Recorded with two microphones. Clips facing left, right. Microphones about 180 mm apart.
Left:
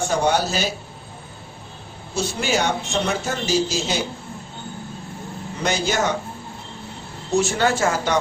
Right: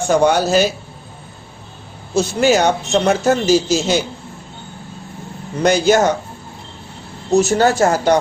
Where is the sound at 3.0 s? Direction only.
70° right (ahead or behind).